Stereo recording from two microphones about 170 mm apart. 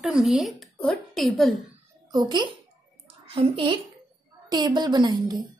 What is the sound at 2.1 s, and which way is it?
A woman's voice, 25° right (ahead or behind).